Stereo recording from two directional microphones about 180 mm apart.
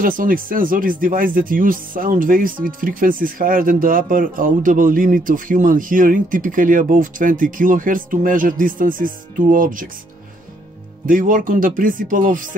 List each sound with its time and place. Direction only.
0.0 s speech: 50° right (ahead or behind)
11.1 s speech: 50° right (ahead or behind)